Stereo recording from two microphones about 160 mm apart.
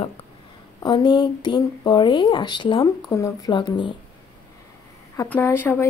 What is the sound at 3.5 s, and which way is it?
Speech, 30° left (ahead or behind).